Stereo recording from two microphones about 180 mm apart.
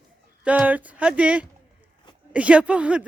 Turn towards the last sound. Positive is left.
turn(degrees=-5)  # may be behind; listen again after turning